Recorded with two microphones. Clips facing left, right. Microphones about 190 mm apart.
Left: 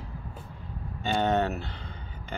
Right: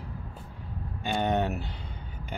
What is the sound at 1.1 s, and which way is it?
Speech, 15° right (ahead or behind).